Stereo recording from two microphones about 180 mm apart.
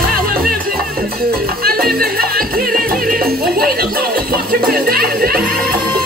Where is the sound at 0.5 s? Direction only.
55° right (ahead or behind).